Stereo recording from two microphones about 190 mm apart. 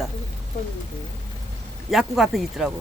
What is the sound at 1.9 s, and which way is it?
Speech, centre (ahead or behind).